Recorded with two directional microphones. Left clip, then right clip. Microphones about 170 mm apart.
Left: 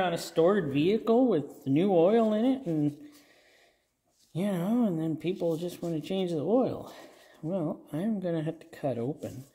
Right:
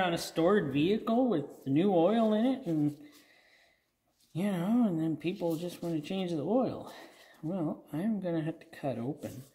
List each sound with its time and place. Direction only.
0.0 s speech: 20° left (ahead or behind); by 2.9 s 35° left (ahead or behind)
4.3 s speech: 35° left (ahead or behind)